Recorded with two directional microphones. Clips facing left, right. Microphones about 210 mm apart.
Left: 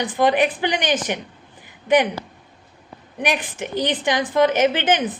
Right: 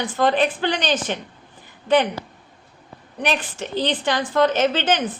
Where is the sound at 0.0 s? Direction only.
15° left (ahead or behind).